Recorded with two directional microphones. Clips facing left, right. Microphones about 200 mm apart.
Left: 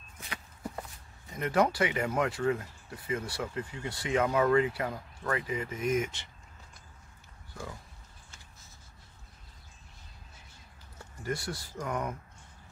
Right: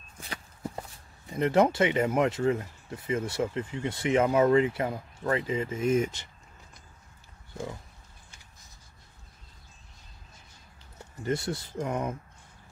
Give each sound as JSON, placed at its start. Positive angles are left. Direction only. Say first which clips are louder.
{"t": 1.4, "sound": "speech", "louder": "right 4 dB", "side_deg": -25}
{"t": 11.2, "sound": "speech", "louder": "right 5 dB", "side_deg": -25}